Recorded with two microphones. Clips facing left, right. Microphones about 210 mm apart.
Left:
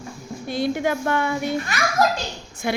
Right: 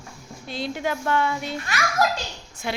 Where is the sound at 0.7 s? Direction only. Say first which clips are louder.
Left 3 dB; 50° left (ahead or behind).